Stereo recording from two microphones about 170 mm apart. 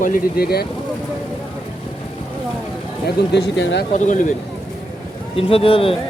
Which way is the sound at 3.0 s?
85° left.